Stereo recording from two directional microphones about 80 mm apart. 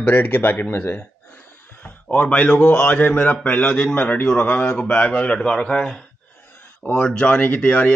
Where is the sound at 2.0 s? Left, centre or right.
Centre.